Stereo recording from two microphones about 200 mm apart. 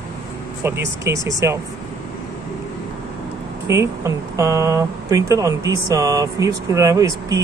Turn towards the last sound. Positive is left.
turn(degrees=-15)  # may be behind; listen again after turning